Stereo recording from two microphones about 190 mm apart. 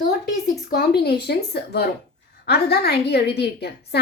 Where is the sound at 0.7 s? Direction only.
60° left (ahead or behind).